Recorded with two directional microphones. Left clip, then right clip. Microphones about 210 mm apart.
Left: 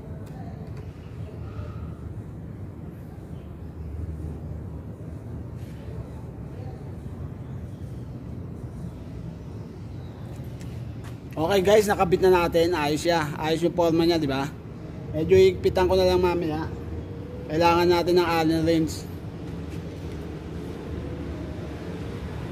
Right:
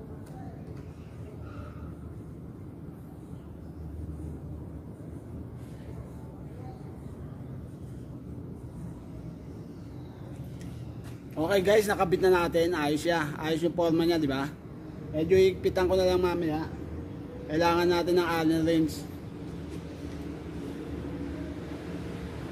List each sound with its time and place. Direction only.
11.3 s speech: 15° left (ahead or behind)